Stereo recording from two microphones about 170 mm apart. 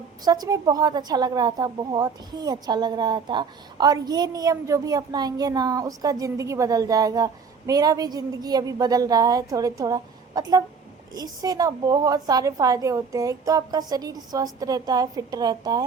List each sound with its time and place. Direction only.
0.3 s a woman's voice: 20° right (ahead or behind)